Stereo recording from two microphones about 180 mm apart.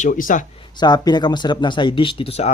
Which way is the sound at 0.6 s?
25° left (ahead or behind).